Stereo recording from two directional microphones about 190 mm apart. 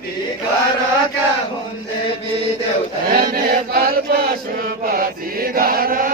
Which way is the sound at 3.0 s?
50° right (ahead or behind).